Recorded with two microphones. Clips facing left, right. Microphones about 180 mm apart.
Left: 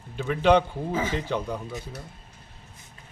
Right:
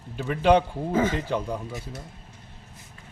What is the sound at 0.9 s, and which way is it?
Speech, 55° right (ahead or behind).